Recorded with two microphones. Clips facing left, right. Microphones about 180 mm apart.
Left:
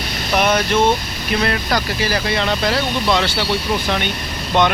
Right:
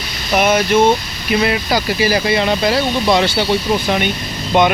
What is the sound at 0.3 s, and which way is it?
Speech, 5° right (ahead or behind).